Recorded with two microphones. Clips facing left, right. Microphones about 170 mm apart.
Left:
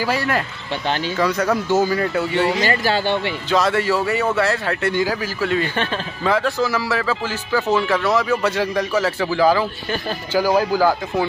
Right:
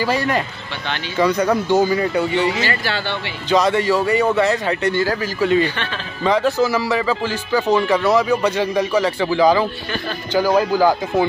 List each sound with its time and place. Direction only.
0.0 s speech: 5° left (ahead or behind)
2.7 s speech: 40° left (ahead or behind)
3.4 s speech: centre (ahead or behind)